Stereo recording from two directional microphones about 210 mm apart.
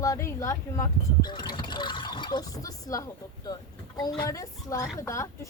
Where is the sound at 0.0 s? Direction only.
15° left (ahead or behind).